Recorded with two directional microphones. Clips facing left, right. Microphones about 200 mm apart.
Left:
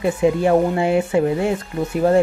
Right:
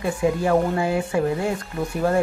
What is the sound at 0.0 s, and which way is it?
Speech, 25° left (ahead or behind).